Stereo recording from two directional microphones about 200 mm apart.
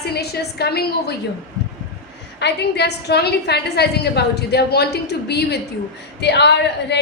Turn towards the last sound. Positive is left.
turn(degrees=55)  # may be behind; listen again after turning